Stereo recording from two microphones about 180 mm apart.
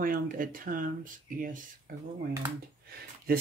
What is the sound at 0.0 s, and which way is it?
Speech, 50° right (ahead or behind).